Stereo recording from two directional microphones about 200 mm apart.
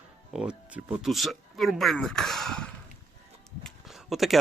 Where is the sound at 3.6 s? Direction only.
Centre (ahead or behind).